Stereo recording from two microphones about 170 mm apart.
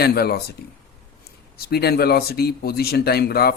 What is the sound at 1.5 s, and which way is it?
Speech, 65° left (ahead or behind).